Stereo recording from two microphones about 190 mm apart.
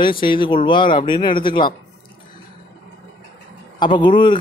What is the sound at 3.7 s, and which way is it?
Speech, 25° left (ahead or behind).